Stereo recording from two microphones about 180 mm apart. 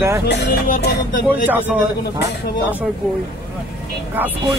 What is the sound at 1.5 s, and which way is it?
Speech, 10° right (ahead or behind).